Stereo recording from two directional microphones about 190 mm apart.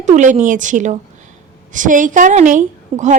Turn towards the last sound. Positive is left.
turn(degrees=-40)  # may be behind; listen again after turning